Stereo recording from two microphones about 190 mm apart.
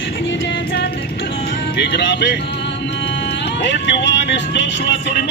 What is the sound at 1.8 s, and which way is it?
Speech, 65° left (ahead or behind).